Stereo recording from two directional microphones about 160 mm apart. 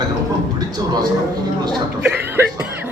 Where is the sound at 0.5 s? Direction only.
25° right (ahead or behind).